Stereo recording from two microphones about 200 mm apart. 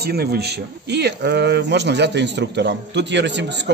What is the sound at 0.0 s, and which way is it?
Speech, 50° right (ahead or behind).